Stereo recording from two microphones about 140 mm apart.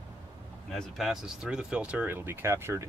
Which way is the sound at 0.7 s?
Centre (ahead or behind).